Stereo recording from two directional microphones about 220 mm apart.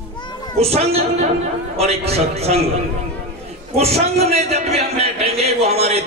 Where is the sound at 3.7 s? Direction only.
30° right (ahead or behind).